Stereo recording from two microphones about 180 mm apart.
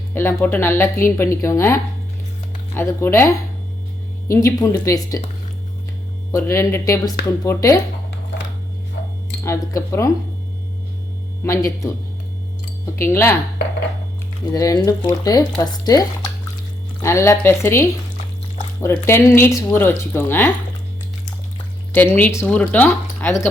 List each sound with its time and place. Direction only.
0.1 s speech: 10° left (ahead or behind)
6.3 s speech: 15° left (ahead or behind)
9.4 s speech: 15° left (ahead or behind)
11.4 s speech: 15° left (ahead or behind)
14.5 s speech: 20° left (ahead or behind)
21.9 s speech: 10° left (ahead or behind)